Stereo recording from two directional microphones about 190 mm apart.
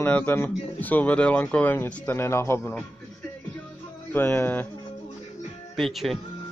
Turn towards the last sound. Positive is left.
turn(degrees=0)  # may be behind; listen again after turning